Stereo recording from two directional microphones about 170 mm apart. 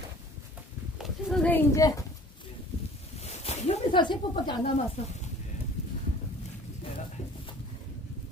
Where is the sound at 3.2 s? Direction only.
40° left (ahead or behind).